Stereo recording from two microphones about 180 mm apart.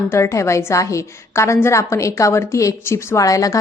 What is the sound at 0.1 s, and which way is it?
A woman's voice, 15° left (ahead or behind).